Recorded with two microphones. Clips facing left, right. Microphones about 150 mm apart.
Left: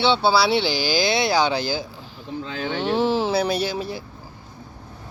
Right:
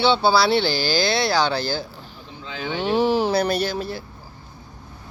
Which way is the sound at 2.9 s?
25° left (ahead or behind).